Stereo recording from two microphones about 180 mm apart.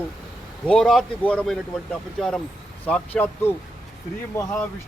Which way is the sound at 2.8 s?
10° left (ahead or behind).